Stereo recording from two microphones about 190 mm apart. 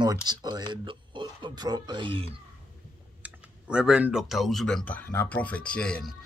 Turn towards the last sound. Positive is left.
turn(degrees=5)  # may be behind; listen again after turning